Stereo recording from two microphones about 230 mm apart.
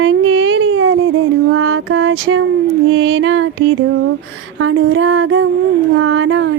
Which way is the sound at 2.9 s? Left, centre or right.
Right.